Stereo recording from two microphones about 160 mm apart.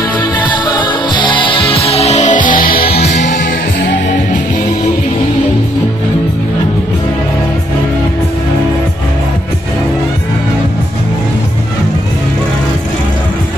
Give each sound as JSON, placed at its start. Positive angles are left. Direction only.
{"t": 0.4, "sound": "music", "side_deg": 30}
{"t": 3.0, "sound": "music", "side_deg": 45}